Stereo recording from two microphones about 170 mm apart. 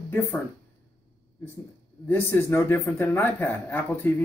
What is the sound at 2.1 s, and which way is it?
A man's voice, 15° left (ahead or behind).